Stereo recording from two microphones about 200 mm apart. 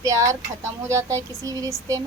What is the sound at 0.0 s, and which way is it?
Speech, 15° right (ahead or behind).